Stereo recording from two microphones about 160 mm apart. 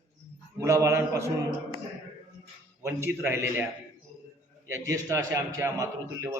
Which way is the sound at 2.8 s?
15° right (ahead or behind).